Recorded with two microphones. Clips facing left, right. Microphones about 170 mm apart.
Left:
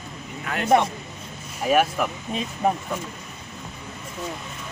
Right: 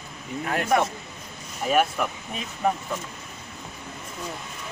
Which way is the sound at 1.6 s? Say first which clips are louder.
Left 2 dB; 5° left (ahead or behind).